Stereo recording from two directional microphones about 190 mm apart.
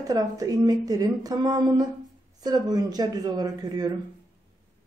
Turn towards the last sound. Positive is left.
turn(degrees=-20)  # may be behind; listen again after turning